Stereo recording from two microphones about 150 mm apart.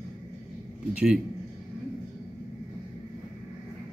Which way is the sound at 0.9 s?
5° right (ahead or behind).